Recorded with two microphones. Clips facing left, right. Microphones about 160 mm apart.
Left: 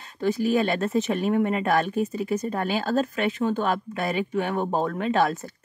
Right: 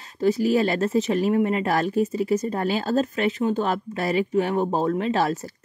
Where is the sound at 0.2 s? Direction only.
30° right (ahead or behind).